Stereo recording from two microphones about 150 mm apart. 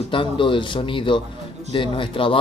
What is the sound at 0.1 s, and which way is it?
Speech, 35° left (ahead or behind).